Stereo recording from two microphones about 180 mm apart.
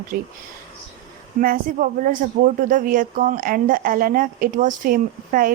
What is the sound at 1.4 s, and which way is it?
Speech, 50° right (ahead or behind).